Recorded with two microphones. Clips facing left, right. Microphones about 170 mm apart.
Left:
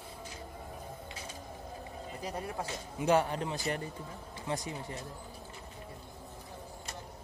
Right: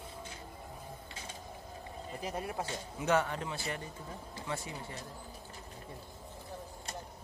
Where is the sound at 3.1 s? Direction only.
35° left (ahead or behind).